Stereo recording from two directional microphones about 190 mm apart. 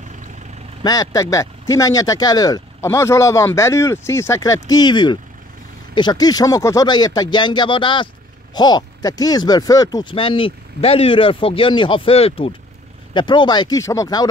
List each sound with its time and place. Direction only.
0.8 s speech: 20° left (ahead or behind)